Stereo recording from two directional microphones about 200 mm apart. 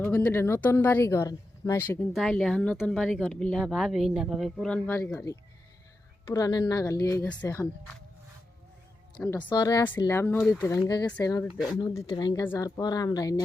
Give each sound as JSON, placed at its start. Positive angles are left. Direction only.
{"t": 0.0, "sound": "speech", "side_deg": 5}
{"t": 2.1, "sound": "speech", "side_deg": 0}
{"t": 9.2, "sound": "speech", "side_deg": 20}
{"t": 11.5, "sound": "speech", "side_deg": -5}
{"t": 11.9, "sound": "speech", "side_deg": 20}